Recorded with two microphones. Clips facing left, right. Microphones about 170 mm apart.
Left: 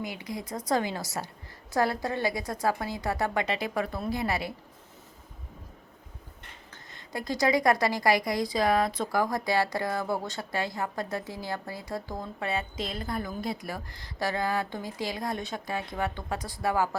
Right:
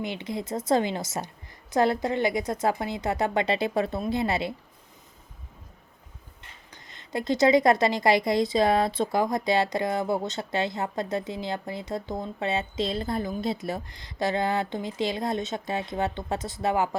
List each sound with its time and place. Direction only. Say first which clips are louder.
0.0 s a woman's voice: right 4 dB; 25° right (ahead or behind)
6.9 s a woman's voice: right 6 dB; 25° right (ahead or behind)